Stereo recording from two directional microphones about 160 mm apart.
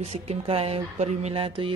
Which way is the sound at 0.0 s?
40° right (ahead or behind).